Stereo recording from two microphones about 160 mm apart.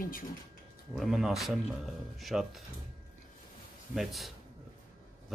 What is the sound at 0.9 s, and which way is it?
Speech, centre (ahead or behind).